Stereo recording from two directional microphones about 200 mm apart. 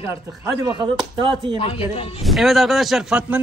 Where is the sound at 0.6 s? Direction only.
25° right (ahead or behind).